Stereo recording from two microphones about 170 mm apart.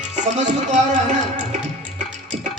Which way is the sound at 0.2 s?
45° right (ahead or behind).